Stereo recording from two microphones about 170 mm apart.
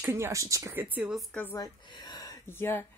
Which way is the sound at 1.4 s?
20° left (ahead or behind).